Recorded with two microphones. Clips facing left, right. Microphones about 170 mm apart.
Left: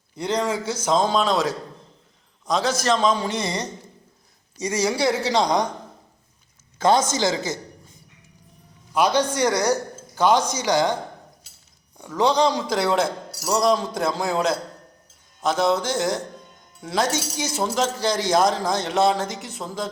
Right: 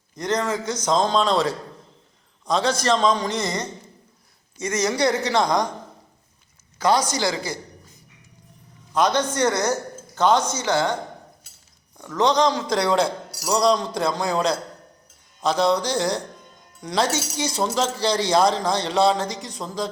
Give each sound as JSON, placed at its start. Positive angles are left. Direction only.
{"t": 0.2, "sound": "a man's voice", "side_deg": 10}
{"t": 4.6, "sound": "a man's voice", "side_deg": 10}
{"t": 6.7, "sound": "a man's voice", "side_deg": 25}
{"t": 8.9, "sound": "a man's voice", "side_deg": 10}
{"t": 11.9, "sound": "speech", "side_deg": 10}